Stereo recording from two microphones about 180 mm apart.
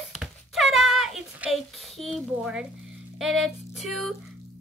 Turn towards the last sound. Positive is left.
turn(degrees=0)  # may be behind; listen again after turning